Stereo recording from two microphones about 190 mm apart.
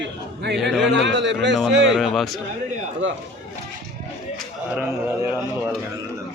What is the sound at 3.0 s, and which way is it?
Speech, 80° right.